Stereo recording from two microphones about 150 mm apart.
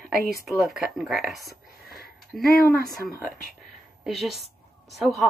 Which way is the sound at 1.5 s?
90° left.